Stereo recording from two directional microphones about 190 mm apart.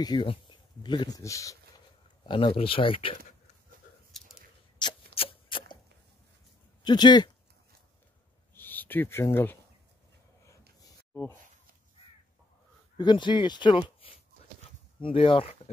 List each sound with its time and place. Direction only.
0.0 s speech: 25° left (ahead or behind)
2.2 s speech: 30° left (ahead or behind)
4.7 s a sound: 25° left (ahead or behind)
6.8 s speech: 25° left (ahead or behind)
8.5 s speech: 10° left (ahead or behind)
12.9 s speech: 25° left (ahead or behind)